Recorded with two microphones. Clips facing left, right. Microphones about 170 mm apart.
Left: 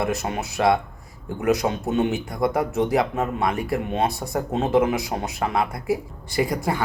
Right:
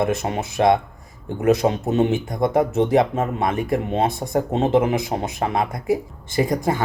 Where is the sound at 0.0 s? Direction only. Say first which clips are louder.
Right 3 dB; 25° right (ahead or behind).